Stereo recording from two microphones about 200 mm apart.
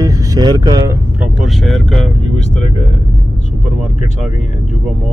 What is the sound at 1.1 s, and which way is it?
Speech, centre (ahead or behind).